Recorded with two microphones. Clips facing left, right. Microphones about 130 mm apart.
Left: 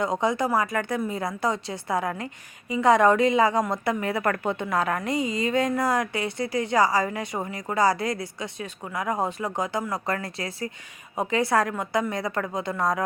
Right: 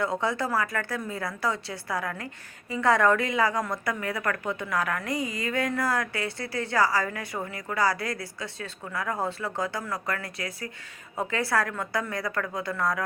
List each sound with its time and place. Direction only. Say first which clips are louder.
0.0 s a woman's voice: left 3 dB; 20° left (ahead or behind)